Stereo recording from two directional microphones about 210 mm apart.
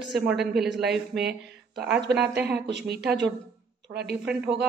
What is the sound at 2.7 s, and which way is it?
Speech, 50° right (ahead or behind).